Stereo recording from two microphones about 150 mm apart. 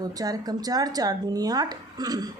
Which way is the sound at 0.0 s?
25° right (ahead or behind).